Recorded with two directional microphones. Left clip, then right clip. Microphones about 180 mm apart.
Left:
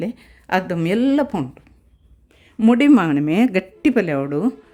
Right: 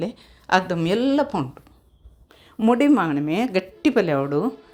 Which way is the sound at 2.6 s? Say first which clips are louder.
Left 3 dB; 20° left (ahead or behind).